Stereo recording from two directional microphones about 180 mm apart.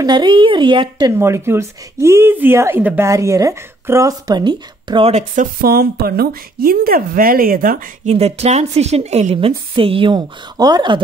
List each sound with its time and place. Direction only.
0.0 s speech: 25° right (ahead or behind)
5.3 s a woman's voice: 50° right (ahead or behind); by 11.0 s 25° right (ahead or behind)